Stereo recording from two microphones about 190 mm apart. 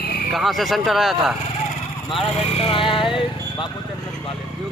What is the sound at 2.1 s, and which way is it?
Speech, 30° left (ahead or behind).